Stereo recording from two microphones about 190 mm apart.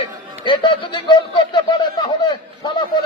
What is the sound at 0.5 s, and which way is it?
A man's voice, 25° left (ahead or behind).